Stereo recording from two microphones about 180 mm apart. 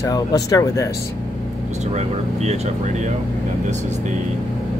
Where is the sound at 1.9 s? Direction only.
40° right (ahead or behind).